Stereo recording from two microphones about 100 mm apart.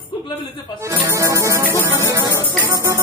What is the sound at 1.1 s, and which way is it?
Music, 30° right (ahead or behind).